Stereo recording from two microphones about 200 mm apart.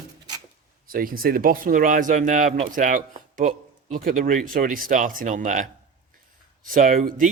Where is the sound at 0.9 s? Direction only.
45° right (ahead or behind).